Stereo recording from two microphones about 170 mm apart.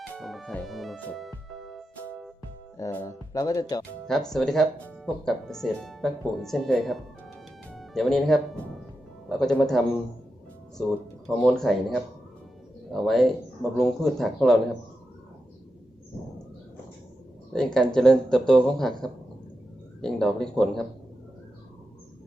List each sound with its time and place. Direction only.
0.2 s music: centre (ahead or behind)
2.7 s speech: 15° left (ahead or behind)
4.0 s speech: 5° left (ahead or behind)
11.4 s speech: 5° left (ahead or behind)
17.5 s speech: 5° left (ahead or behind)